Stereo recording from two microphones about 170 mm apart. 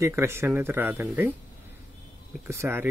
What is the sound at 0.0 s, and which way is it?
Speech, 15° right (ahead or behind).